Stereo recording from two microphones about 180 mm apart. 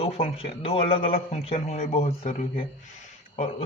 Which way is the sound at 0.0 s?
35° left (ahead or behind).